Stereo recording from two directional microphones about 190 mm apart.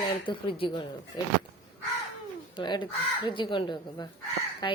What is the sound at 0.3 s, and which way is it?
Speech, 25° left (ahead or behind).